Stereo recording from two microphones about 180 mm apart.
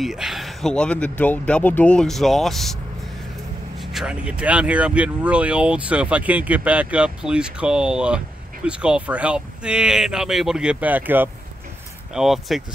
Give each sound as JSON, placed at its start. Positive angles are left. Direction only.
{"t": 0.0, "sound": "speech", "side_deg": 0}